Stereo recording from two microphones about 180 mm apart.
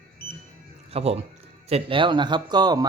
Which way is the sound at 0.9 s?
35° right (ahead or behind).